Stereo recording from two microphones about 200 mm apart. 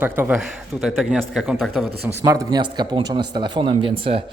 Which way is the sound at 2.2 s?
15° right (ahead or behind).